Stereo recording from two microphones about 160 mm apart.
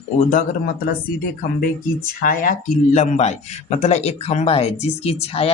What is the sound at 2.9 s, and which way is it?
A man's voice, 45° left (ahead or behind).